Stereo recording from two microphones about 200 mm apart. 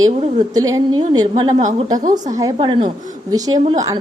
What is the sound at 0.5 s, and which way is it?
A woman's voice, 15° right (ahead or behind).